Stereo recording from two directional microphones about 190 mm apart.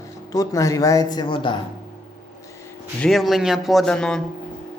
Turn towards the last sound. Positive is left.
turn(degrees=5)  # may be behind; listen again after turning